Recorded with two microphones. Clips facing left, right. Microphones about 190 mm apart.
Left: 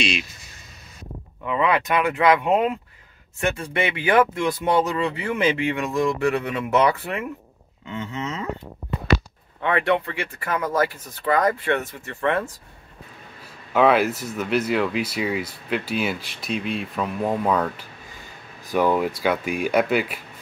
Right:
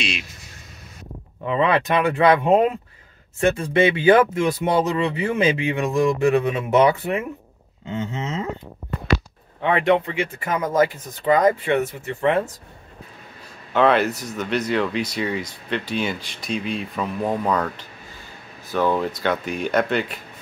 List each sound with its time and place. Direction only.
1.4 s speech: 30° right (ahead or behind)
9.6 s speech: 20° right (ahead or behind)
13.7 s speech: 5° left (ahead or behind)